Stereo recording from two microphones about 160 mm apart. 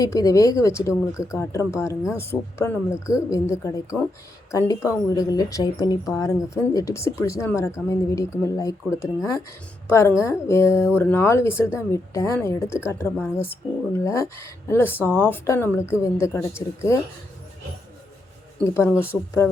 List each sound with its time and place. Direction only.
0.0 s speech: 20° left (ahead or behind)
18.6 s speech: 15° left (ahead or behind)